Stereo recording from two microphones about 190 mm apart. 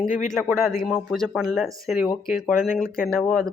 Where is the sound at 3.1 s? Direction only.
5° left (ahead or behind).